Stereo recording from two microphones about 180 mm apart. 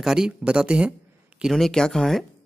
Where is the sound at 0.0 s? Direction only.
5° right (ahead or behind).